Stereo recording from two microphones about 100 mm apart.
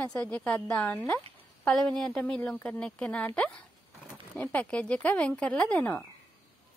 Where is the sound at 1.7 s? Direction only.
5° left (ahead or behind).